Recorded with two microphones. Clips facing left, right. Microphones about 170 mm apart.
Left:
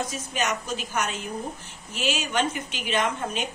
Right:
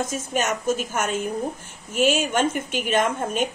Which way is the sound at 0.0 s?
50° right (ahead or behind).